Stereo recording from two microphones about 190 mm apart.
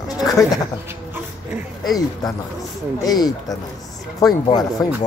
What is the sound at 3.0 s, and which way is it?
Speech, 20° left (ahead or behind).